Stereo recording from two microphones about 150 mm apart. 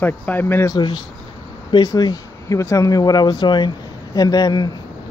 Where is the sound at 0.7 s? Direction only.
30° left (ahead or behind).